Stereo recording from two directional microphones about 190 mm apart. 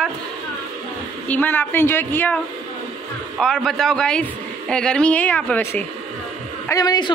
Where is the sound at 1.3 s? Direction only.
10° left (ahead or behind).